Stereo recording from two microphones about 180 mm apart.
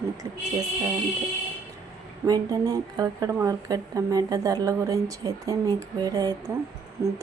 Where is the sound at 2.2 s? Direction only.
20° right (ahead or behind).